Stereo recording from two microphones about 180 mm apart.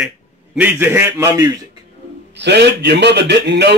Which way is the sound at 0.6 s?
10° right (ahead or behind).